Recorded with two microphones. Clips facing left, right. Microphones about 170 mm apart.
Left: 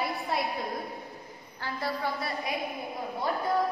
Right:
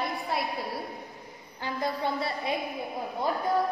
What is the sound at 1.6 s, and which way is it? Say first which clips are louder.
Speech: right 2 dB; 20° right (ahead or behind).